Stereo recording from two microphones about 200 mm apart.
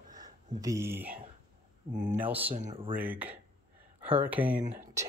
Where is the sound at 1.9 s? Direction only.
35° right (ahead or behind).